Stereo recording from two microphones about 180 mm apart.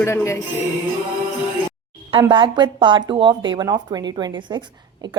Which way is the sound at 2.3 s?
25° right (ahead or behind).